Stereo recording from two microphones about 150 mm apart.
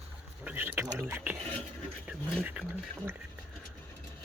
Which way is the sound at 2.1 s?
10° right (ahead or behind).